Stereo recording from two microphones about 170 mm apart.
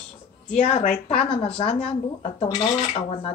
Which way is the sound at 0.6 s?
45° left (ahead or behind).